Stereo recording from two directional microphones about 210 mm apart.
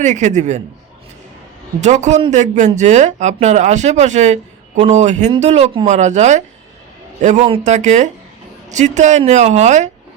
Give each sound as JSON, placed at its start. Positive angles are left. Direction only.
{"t": 0.0, "sound": "speech", "side_deg": -35}
{"t": 1.8, "sound": "speech", "side_deg": -35}